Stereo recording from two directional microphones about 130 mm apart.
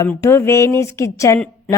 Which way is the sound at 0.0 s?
20° left (ahead or behind).